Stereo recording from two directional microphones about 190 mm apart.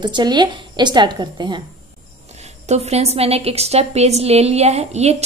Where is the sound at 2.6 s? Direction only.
35° right (ahead or behind).